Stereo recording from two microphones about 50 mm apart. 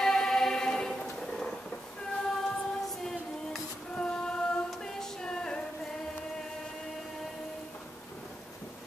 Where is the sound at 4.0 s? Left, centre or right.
Centre.